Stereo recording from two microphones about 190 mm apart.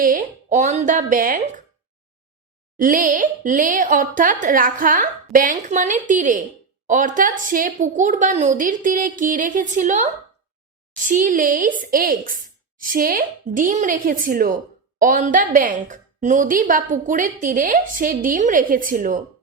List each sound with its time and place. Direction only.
0.0 s speech: 45° right (ahead or behind)
2.7 s speech: 45° right (ahead or behind)